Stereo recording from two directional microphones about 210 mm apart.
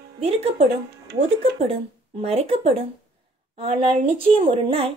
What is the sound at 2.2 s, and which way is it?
Speech, 30° right (ahead or behind).